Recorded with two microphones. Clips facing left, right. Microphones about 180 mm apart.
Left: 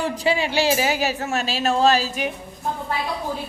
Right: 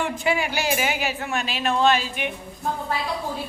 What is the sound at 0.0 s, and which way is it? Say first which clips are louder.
Speech: left 2 dB; 30° left (ahead or behind).